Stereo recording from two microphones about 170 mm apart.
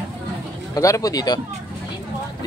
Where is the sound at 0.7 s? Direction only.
20° left (ahead or behind).